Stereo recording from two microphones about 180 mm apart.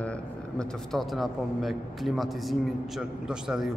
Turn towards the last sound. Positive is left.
turn(degrees=-5)  # may be behind; listen again after turning